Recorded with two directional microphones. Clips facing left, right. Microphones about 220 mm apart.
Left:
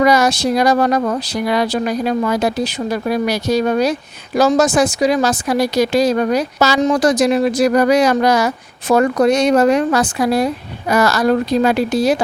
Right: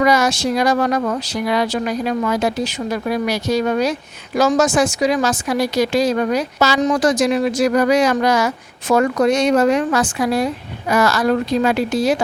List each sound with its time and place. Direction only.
0.0 s a woman's voice: 35° left (ahead or behind)